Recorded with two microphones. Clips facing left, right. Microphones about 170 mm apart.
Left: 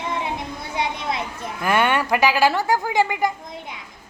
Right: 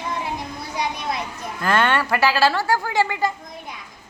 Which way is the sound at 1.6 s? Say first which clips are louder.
Even; 15° left (ahead or behind).